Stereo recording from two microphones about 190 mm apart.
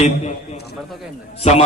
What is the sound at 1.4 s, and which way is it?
Speech, 35° left (ahead or behind).